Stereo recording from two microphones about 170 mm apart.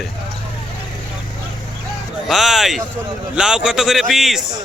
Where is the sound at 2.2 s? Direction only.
Centre (ahead or behind).